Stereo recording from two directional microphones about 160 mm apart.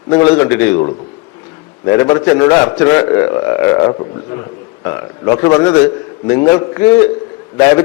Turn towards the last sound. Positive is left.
turn(degrees=20)  # may be behind; listen again after turning